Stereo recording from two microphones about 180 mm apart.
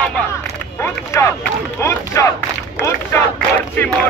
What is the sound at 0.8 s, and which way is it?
Speech, 15° left (ahead or behind).